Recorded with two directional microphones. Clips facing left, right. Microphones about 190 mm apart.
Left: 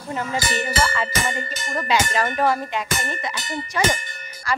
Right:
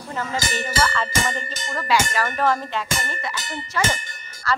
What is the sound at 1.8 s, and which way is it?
Speech, 20° left (ahead or behind).